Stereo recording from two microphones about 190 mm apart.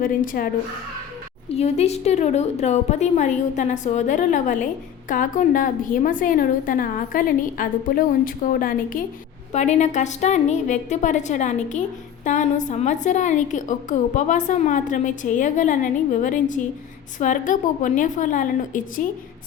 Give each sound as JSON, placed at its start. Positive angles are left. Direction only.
{"t": 0.4, "sound": "a woman's voice", "side_deg": 45}
{"t": 1.5, "sound": "a woman's voice", "side_deg": 35}
{"t": 9.5, "sound": "a woman's voice", "side_deg": 35}